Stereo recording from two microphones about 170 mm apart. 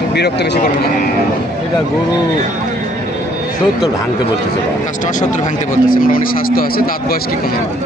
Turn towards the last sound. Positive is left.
turn(degrees=60)  # may be behind; listen again after turning